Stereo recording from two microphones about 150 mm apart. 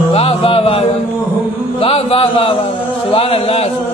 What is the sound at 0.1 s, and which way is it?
Music, 40° left (ahead or behind).